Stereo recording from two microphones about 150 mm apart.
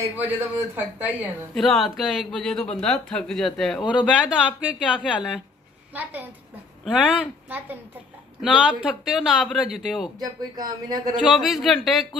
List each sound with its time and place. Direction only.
0.2 s speech: 10° right (ahead or behind)
1.5 s speech: centre (ahead or behind)
7.4 s a woman's voice: 10° right (ahead or behind)
10.1 s speech: 25° right (ahead or behind)
11.1 s speech: centre (ahead or behind)